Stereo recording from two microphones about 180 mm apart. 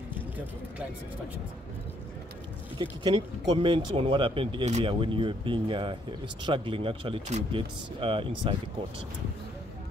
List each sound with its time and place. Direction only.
2.8 s speech: 25° right (ahead or behind)